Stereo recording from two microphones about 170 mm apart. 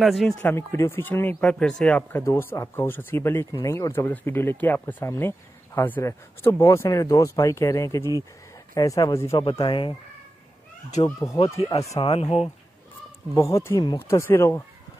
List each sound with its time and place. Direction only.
0.0 s speech: centre (ahead or behind)
0.4 s speech: 15° left (ahead or behind)
9.4 s speech: 30° left (ahead or behind)
11.1 s speech: 20° left (ahead or behind)
12.0 s speech: 35° left (ahead or behind)
13.3 s speech: 20° left (ahead or behind)